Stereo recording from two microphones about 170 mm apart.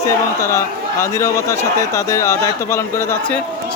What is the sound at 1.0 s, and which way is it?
Speech, 15° left (ahead or behind).